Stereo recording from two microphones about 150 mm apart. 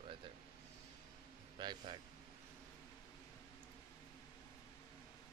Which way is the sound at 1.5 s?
30° right (ahead or behind).